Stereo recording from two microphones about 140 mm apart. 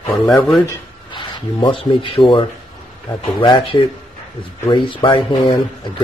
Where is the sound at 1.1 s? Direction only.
35° left (ahead or behind).